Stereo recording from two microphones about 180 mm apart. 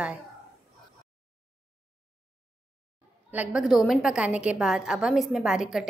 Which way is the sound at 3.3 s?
10° right (ahead or behind).